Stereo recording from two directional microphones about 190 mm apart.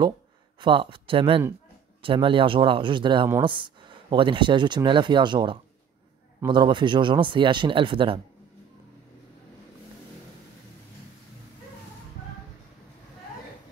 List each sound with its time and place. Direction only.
0.6 s speech: 25° right (ahead or behind)